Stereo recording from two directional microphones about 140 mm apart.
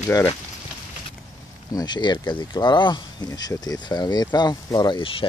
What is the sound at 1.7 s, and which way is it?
Speech, 30° left (ahead or behind).